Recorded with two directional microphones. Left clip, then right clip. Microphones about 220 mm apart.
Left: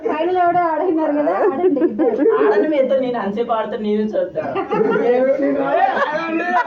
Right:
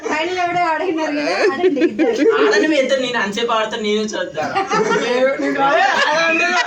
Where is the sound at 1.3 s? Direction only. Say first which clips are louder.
Right 2 dB; 10° right (ahead or behind).